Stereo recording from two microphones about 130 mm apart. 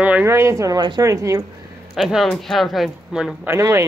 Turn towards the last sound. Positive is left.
turn(degrees=-20)  # may be behind; listen again after turning